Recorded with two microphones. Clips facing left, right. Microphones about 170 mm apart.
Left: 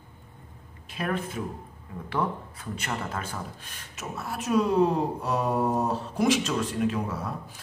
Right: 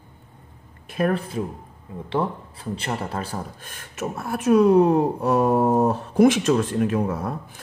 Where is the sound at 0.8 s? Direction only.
50° right (ahead or behind).